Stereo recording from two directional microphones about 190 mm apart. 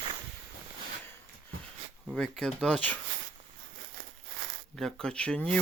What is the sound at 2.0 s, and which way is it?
Speech, centre (ahead or behind).